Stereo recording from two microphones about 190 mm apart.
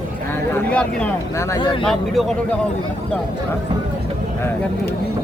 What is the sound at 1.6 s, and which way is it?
Speech, 25° left (ahead or behind).